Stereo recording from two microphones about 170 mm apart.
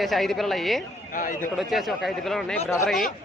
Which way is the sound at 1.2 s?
50° left (ahead or behind).